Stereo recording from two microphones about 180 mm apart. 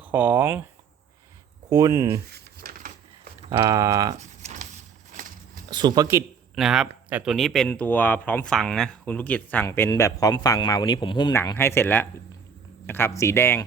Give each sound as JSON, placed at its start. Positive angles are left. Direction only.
{"t": 0.0, "sound": "speech", "side_deg": -10}
{"t": 1.7, "sound": "speech", "side_deg": -20}
{"t": 2.3, "sound": "a sound", "side_deg": -55}
{"t": 3.6, "sound": "speech", "side_deg": -20}
{"t": 4.2, "sound": "a sound", "side_deg": -40}
{"t": 5.7, "sound": "speech", "side_deg": -25}
{"t": 6.6, "sound": "speech", "side_deg": 0}